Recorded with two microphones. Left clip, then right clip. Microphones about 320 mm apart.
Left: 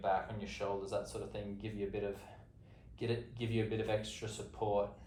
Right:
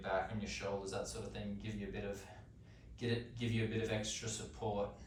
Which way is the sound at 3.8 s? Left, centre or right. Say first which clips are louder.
Left 2 dB; centre.